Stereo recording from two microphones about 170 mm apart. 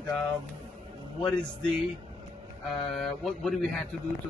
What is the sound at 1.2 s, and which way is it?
A man's voice, 5° left (ahead or behind).